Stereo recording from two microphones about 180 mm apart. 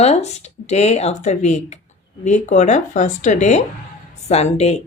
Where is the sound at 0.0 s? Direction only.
35° left (ahead or behind).